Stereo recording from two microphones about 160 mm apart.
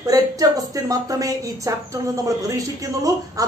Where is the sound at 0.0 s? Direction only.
25° right (ahead or behind).